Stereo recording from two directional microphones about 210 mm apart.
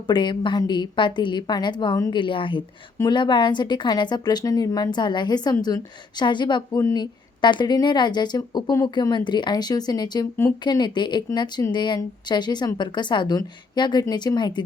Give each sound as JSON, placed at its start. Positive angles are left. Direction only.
{"t": 0.1, "sound": "a woman's voice", "side_deg": 20}